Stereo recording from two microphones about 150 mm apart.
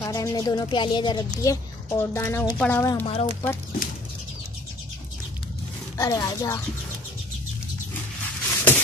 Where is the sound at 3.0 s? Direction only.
40° left (ahead or behind).